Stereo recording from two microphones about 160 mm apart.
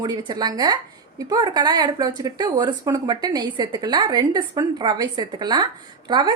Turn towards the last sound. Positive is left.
turn(degrees=-30)  # may be behind; listen again after turning